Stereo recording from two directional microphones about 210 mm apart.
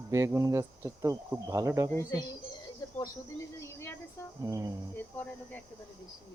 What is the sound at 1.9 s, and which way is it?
Speech, 15° left (ahead or behind).